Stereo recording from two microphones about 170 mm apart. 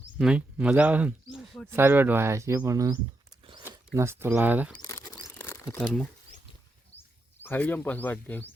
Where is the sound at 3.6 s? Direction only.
15° right (ahead or behind).